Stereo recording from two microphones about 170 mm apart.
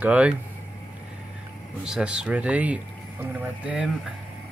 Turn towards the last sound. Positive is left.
turn(degrees=-5)  # may be behind; listen again after turning